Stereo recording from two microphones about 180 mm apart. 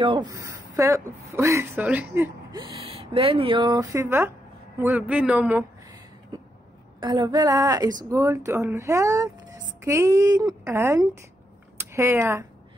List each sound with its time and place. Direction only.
0.0 s speech: 30° right (ahead or behind)
0.3 s speech: 15° right (ahead or behind)
2.5 s speech: 30° right (ahead or behind); by 5.7 s 10° right (ahead or behind)
7.0 s speech: 25° right (ahead or behind)